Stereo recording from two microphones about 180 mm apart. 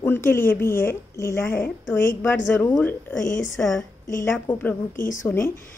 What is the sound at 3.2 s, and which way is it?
Speech, 50° left (ahead or behind).